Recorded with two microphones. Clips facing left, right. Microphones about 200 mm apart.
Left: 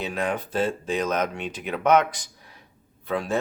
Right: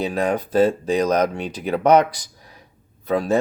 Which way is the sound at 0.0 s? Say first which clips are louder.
Right 6 dB; 40° right (ahead or behind).